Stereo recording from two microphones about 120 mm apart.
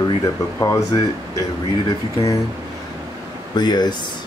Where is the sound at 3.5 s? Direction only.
35° left (ahead or behind).